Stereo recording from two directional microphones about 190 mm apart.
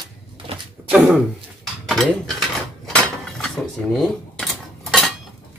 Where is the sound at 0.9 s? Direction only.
5° right (ahead or behind).